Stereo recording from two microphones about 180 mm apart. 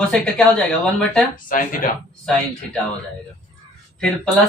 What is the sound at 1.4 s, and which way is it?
Speech, 50° left (ahead or behind).